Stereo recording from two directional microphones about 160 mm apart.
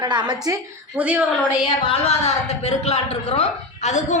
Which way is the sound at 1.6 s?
40° left (ahead or behind).